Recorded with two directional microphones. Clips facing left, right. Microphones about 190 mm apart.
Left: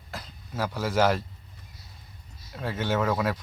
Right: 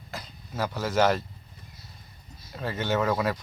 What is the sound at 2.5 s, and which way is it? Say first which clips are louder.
Speech: even; centre (ahead or behind).